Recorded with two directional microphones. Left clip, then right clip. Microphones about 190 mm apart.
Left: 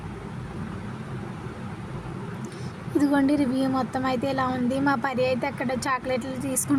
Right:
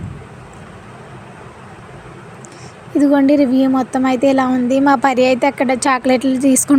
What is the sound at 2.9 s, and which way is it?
A woman's voice, 15° right (ahead or behind).